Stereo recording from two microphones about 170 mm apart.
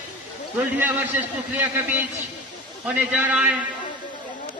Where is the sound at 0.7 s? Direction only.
10° right (ahead or behind).